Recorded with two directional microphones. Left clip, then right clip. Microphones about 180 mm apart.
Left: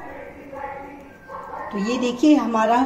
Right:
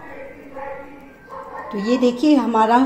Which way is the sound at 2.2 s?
30° right (ahead or behind).